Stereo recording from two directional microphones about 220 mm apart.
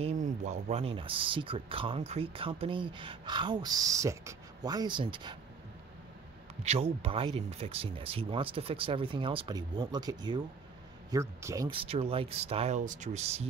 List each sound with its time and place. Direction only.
0.0 s speech: 30° right (ahead or behind)
6.6 s speech: 30° right (ahead or behind)